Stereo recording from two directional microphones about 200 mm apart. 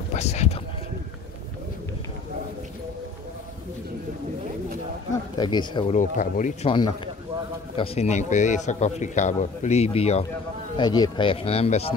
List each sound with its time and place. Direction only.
0.1 s a sound: 35° left (ahead or behind)
5.4 s speech: 20° left (ahead or behind)
5.9 s a man's voice: 40° left (ahead or behind)
7.7 s a man's voice: 30° left (ahead or behind)
10.8 s speech: 20° left (ahead or behind)